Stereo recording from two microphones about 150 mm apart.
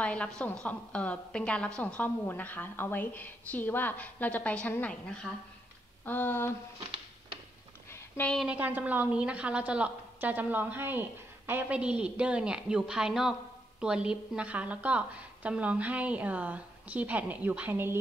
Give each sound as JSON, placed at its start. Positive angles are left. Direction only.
{"t": 0.0, "sound": "a woman's voice", "side_deg": 5}
{"t": 7.9, "sound": "a sound", "side_deg": 10}
{"t": 8.4, "sound": "a woman's voice", "side_deg": -10}